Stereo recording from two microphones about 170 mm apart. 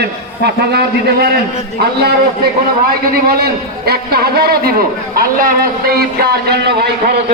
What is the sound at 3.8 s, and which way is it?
A man's voice, 65° right (ahead or behind).